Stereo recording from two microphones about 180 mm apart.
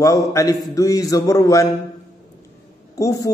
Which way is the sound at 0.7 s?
20° left (ahead or behind).